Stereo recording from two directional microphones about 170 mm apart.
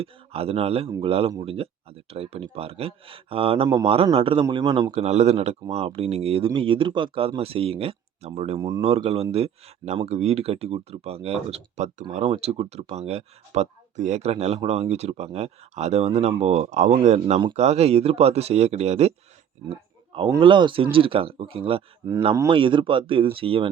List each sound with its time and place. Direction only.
0.0 s a man's voice: 35° right (ahead or behind)
4.9 s speech: 40° right (ahead or behind)
19.7 s a sound: 30° right (ahead or behind)
20.4 s speech: 30° right (ahead or behind)